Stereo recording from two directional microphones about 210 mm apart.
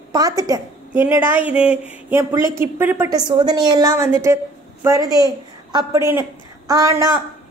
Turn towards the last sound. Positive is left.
turn(degrees=-15)  # may be behind; listen again after turning